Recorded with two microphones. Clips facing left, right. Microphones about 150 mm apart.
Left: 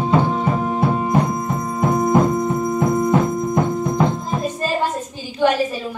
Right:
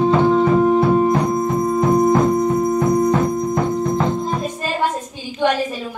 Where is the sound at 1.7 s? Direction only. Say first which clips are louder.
Right 1 dB; 10° left (ahead or behind).